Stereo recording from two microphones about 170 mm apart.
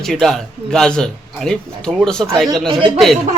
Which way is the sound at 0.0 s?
Centre (ahead or behind).